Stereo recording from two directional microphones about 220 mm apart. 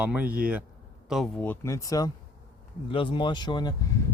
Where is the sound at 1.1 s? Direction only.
5° left (ahead or behind).